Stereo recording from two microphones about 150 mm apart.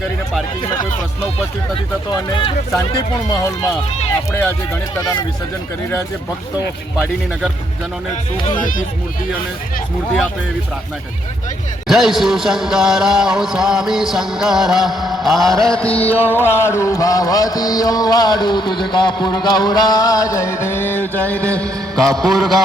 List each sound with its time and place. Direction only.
2.0 s speech: 35° left (ahead or behind)
11.9 s speech: centre (ahead or behind)
16.3 s music: 15° left (ahead or behind)
21.6 s speech: 5° left (ahead or behind)